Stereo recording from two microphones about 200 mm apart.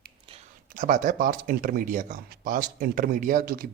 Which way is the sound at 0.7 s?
40° right (ahead or behind).